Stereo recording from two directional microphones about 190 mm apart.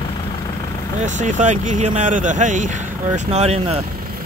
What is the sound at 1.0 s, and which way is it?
Speech, 40° right (ahead or behind).